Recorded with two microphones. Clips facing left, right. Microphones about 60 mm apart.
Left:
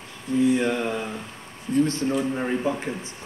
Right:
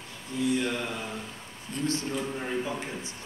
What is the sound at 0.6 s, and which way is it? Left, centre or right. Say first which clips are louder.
Speech: left 6 dB; left.